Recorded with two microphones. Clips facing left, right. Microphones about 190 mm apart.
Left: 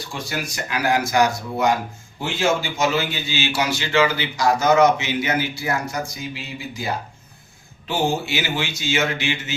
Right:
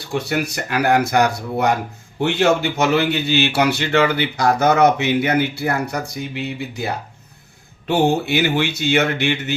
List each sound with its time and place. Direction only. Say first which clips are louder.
0.1 s a man's voice: right 9 dB; 65° right (ahead or behind)